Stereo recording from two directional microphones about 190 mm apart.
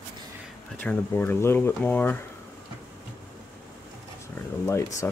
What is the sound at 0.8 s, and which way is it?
Speech, 10° left (ahead or behind).